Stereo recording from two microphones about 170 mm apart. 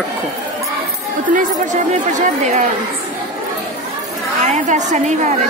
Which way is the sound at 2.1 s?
45° right (ahead or behind).